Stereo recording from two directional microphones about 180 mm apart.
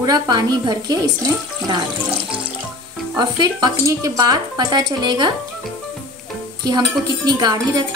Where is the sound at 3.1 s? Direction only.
20° right (ahead or behind).